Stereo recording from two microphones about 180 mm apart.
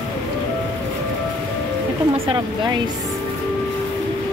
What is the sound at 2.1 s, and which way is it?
Speech, 30° right (ahead or behind).